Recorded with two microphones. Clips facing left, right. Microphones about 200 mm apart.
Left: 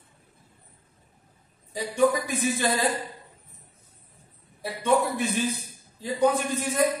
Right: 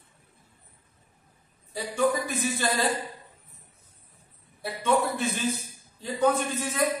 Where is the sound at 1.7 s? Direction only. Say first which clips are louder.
Left 3 dB; 15° left (ahead or behind).